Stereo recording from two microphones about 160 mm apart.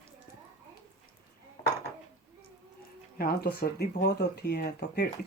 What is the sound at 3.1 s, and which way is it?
Speech, 70° left (ahead or behind).